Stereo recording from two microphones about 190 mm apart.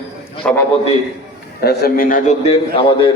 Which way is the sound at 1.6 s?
50° left (ahead or behind).